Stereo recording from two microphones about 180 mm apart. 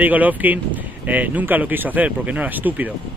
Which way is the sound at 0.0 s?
10° right (ahead or behind).